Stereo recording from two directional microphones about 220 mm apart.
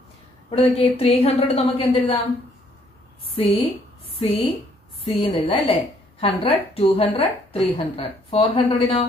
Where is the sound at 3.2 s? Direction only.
25° left (ahead or behind).